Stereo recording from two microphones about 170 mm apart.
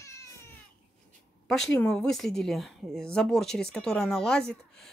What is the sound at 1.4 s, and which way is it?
Speech, 5° left (ahead or behind).